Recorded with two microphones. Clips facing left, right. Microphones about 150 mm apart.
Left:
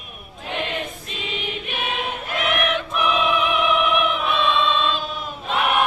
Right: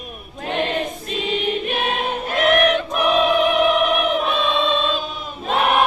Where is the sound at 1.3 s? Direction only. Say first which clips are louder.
Right 8 dB; 40° right (ahead or behind).